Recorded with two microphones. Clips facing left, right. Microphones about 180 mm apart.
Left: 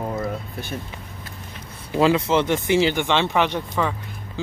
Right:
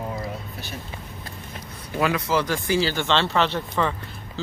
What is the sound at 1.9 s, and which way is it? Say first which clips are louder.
Speech: left 5 dB; 25° left (ahead or behind).